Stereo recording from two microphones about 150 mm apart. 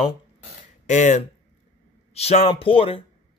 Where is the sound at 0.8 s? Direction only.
55° left (ahead or behind).